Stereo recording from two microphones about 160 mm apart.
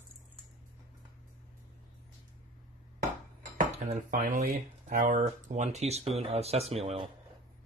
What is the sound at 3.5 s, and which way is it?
Dishes, 50° right (ahead or behind).